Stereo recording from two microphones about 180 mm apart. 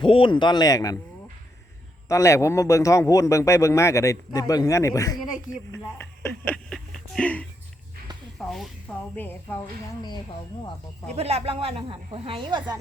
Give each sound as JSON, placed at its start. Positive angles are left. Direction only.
{"t": 0.0, "sound": "speech", "side_deg": 30}
{"t": 2.0, "sound": "speech", "side_deg": 15}
{"t": 11.1, "sound": "speech", "side_deg": -35}